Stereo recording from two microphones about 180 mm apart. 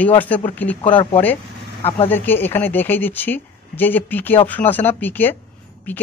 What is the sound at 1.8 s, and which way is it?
Speech, 35° left (ahead or behind).